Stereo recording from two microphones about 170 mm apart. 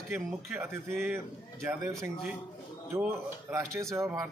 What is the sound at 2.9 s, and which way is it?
Speech, 15° right (ahead or behind).